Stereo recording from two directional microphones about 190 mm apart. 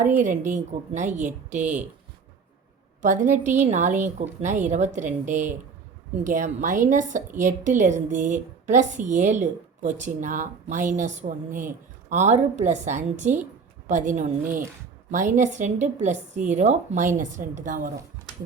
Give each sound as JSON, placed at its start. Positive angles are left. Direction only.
{"t": 0.2, "sound": "a woman's voice", "side_deg": -40}
{"t": 3.0, "sound": "a woman's voice", "side_deg": -40}